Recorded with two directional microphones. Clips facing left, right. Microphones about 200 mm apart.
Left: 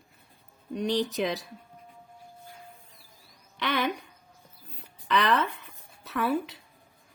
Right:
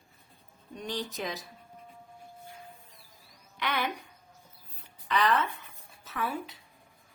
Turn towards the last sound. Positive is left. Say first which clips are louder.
# left 7 dB
turn(degrees=70)  # may be behind; listen again after turning